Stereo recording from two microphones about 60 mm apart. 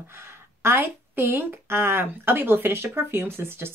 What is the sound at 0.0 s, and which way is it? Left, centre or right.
A woman's voice, right.